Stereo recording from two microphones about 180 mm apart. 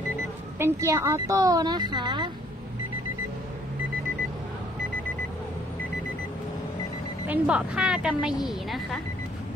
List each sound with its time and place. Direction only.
0.6 s speech: 15° right (ahead or behind)
7.2 s a woman's voice: 5° right (ahead or behind)